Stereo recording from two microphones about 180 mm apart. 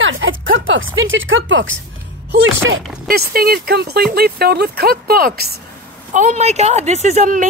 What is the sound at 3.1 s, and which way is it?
Speech, 60° right (ahead or behind).